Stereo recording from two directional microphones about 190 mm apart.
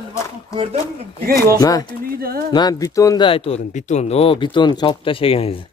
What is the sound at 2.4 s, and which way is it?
Speech, 20° left (ahead or behind).